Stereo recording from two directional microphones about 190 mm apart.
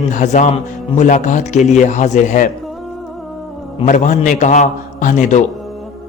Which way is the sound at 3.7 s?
40° left (ahead or behind).